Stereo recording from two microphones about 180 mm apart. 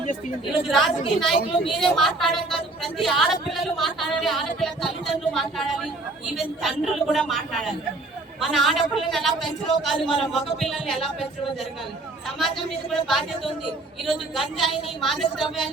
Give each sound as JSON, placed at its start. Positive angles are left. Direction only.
{"t": 0.5, "sound": "speech", "side_deg": 0}
{"t": 1.4, "sound": "a woman's voice", "side_deg": 30}
{"t": 1.8, "sound": "speech", "side_deg": 0}
{"t": 12.9, "sound": "speech", "side_deg": 0}